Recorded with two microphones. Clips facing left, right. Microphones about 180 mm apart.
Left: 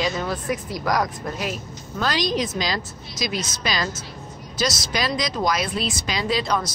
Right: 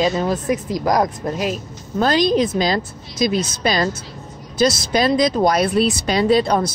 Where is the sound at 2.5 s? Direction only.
50° right (ahead or behind).